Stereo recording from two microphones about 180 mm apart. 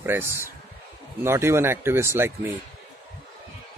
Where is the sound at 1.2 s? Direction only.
15° right (ahead or behind).